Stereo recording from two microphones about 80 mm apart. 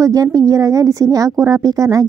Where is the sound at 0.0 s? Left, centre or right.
Right.